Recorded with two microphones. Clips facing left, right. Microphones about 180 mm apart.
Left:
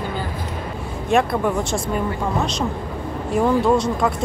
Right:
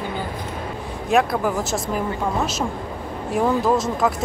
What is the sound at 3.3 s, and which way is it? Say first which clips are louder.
Speech: left 2 dB; centre (ahead or behind).